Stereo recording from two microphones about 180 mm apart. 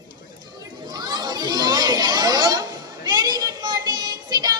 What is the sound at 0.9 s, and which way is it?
Children playing, 25° right (ahead or behind).